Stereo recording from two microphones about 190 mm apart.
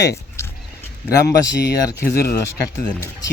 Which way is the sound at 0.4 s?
15° left (ahead or behind).